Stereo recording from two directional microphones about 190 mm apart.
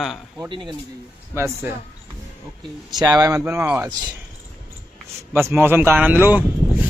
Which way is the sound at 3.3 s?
10° right (ahead or behind).